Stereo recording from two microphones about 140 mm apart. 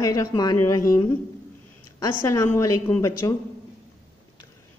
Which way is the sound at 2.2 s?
20° left (ahead or behind).